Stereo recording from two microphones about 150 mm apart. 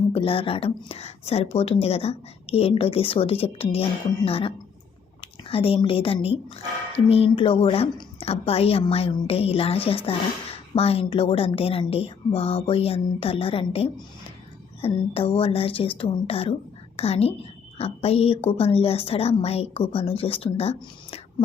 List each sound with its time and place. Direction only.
0.1 s a woman's voice: 35° left (ahead or behind)